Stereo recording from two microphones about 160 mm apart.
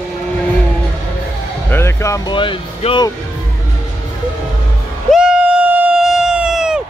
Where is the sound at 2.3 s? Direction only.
30° left (ahead or behind).